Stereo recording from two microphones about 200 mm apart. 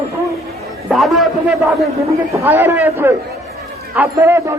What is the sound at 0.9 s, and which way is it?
A man's voice, centre (ahead or behind).